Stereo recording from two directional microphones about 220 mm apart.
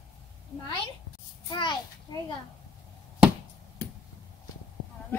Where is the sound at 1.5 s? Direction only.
20° left (ahead or behind).